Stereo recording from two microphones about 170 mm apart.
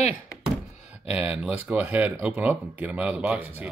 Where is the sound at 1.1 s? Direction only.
10° right (ahead or behind).